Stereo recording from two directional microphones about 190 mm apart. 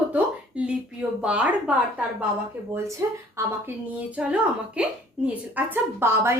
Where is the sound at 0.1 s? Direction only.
5° right (ahead or behind).